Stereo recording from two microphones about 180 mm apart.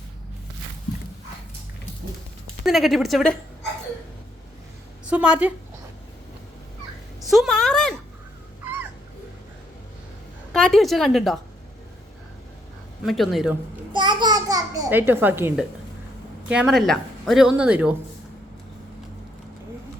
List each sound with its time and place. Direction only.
2.6 s a woman's voice: centre (ahead or behind)
5.0 s a woman's voice: 5° right (ahead or behind)
7.2 s speech: centre (ahead or behind)
10.5 s a woman's voice: centre (ahead or behind)
13.1 s a woman's voice: centre (ahead or behind)
13.9 s babbling: 25° right (ahead or behind)
16.5 s a woman's voice: 5° right (ahead or behind)